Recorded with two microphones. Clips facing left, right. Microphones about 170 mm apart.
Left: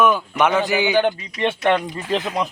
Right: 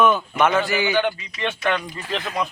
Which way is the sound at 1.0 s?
40° left (ahead or behind).